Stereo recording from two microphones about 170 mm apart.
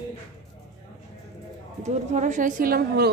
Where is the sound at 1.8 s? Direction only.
45° right (ahead or behind); by 3.1 s 70° right (ahead or behind).